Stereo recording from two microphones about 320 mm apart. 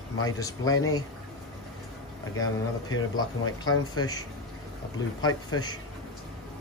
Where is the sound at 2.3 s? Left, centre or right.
Left.